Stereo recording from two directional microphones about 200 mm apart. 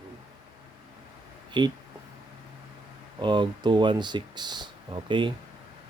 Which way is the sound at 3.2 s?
25° right (ahead or behind).